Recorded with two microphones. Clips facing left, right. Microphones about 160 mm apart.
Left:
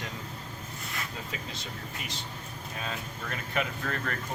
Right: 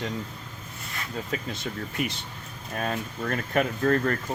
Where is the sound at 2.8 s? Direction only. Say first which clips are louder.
Right 9 dB; 50° right (ahead or behind).